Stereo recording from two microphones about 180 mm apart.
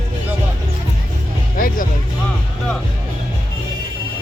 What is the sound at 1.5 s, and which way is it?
Speech, 50° left (ahead or behind).